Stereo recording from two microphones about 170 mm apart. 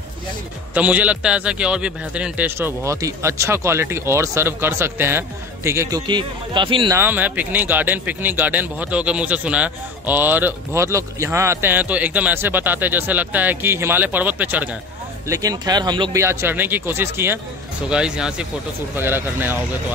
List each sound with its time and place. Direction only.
0.7 s speech: 10° right (ahead or behind); by 6.9 s 30° right (ahead or behind)
6.9 s speech: 10° right (ahead or behind)
15.2 s speech: 20° right (ahead or behind)